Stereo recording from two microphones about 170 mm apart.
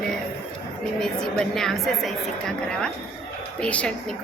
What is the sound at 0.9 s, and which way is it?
A woman's voice, 5° left (ahead or behind).